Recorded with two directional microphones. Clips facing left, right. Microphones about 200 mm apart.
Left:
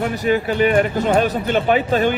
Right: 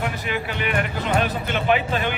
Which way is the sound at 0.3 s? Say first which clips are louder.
Left 14 dB; 40° left (ahead or behind).